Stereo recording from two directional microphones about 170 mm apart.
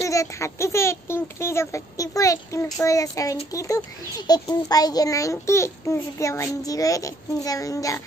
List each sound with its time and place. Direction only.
0.0 s a child's voice: 20° left (ahead or behind)